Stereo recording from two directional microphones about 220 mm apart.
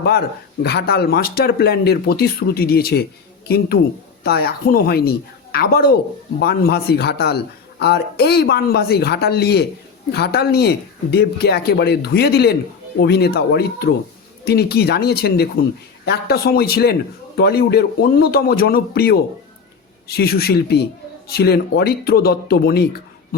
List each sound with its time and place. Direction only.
0.0 s a man's voice: 45° left (ahead or behind)
4.2 s a man's voice: 45° left (ahead or behind)